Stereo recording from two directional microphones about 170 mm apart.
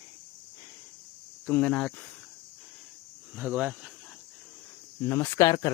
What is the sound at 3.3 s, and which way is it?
Speech, 5° right (ahead or behind).